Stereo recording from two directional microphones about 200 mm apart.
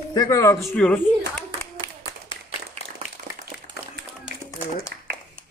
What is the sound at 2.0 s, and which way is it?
Clapping, 25° left (ahead or behind).